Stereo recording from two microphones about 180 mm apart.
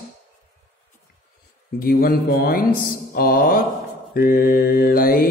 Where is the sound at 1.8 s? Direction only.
55° left (ahead or behind).